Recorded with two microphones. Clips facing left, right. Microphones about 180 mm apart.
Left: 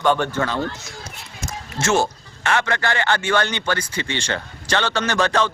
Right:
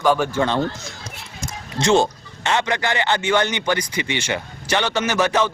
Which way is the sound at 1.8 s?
20° right (ahead or behind).